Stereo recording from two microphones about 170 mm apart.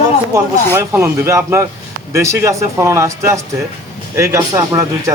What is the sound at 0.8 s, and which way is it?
Speech, 15° right (ahead or behind).